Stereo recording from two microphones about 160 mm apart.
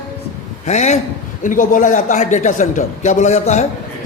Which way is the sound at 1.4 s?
55° left (ahead or behind).